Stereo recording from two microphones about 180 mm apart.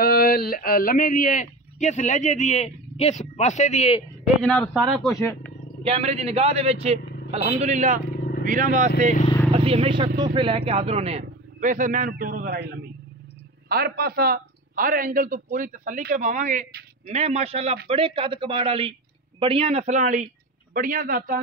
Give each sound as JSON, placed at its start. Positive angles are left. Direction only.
{"t": 0.0, "sound": "speech", "side_deg": 55}
{"t": 4.4, "sound": "speech", "side_deg": 5}
{"t": 5.9, "sound": "a man's voice", "side_deg": -35}
{"t": 9.5, "sound": "a man's voice", "side_deg": -30}